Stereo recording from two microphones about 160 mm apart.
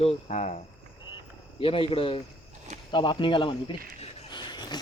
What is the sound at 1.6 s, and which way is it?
Speech, 35° left (ahead or behind).